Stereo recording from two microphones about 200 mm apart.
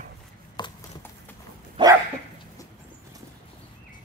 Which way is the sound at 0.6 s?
20° left (ahead or behind).